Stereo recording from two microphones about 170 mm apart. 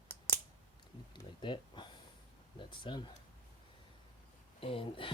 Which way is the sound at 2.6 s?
30° left (ahead or behind).